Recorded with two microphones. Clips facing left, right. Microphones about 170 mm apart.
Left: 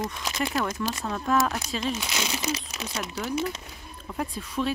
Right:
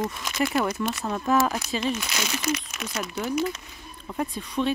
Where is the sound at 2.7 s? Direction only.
35° left (ahead or behind).